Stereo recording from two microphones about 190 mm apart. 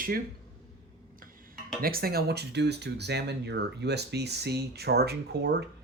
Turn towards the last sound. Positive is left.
turn(degrees=-60)  # may be behind; listen again after turning